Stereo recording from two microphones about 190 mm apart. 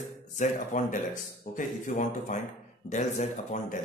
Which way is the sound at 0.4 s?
45° left (ahead or behind).